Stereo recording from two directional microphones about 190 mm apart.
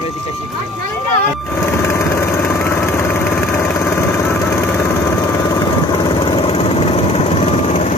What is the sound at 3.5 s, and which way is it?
Vehicle, 10° left (ahead or behind).